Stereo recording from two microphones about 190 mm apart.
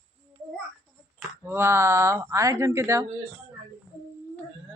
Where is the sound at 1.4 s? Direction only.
10° right (ahead or behind).